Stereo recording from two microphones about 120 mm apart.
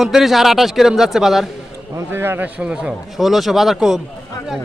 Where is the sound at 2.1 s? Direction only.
20° right (ahead or behind); by 4.0 s 5° right (ahead or behind).